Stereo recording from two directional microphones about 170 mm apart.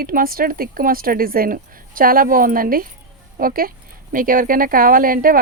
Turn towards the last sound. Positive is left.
turn(degrees=-55)  # may be behind; listen again after turning